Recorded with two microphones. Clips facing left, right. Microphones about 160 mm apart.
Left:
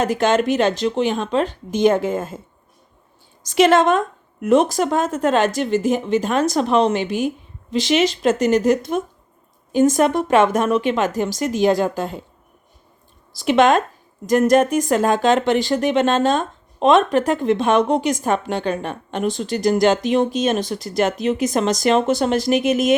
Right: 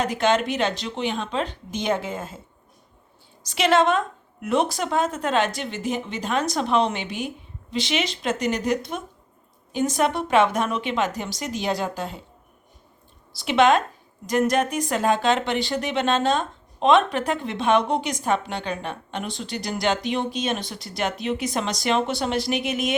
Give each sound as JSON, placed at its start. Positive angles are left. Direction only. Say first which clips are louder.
{"t": 0.0, "sound": "speech", "louder": "left 4 dB", "side_deg": 45}
{"t": 3.4, "sound": "speech", "louder": "left 5 dB", "side_deg": 45}
{"t": 13.4, "sound": "speech", "louder": "left 3 dB", "side_deg": 45}